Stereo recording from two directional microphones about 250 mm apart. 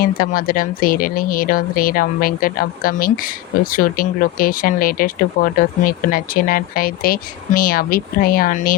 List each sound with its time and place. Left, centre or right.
0.0 s speech: left